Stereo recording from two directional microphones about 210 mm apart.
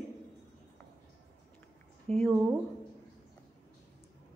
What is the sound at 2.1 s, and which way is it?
Speech, 30° right (ahead or behind).